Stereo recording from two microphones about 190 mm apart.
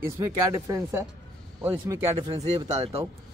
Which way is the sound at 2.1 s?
30° right (ahead or behind).